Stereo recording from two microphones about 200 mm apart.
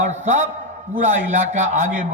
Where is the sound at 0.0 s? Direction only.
35° right (ahead or behind).